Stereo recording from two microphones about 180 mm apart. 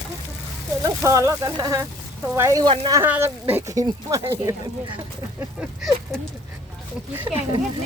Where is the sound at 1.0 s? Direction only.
15° right (ahead or behind).